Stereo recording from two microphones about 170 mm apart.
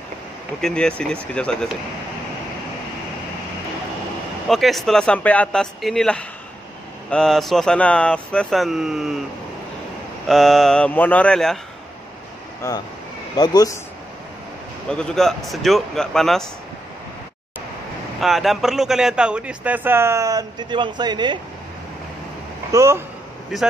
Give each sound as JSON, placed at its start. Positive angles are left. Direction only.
{"t": 0.6, "sound": "speech", "side_deg": 5}
{"t": 4.5, "sound": "speech", "side_deg": 0}
{"t": 10.2, "sound": "speech", "side_deg": 0}
{"t": 12.6, "sound": "speech", "side_deg": 15}
{"t": 14.9, "sound": "speech", "side_deg": 5}
{"t": 18.2, "sound": "a man's voice", "side_deg": 0}
{"t": 22.7, "sound": "a man's voice", "side_deg": -15}